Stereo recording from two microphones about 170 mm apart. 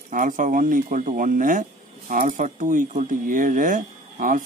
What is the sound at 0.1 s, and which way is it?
Speech, 50° right (ahead or behind).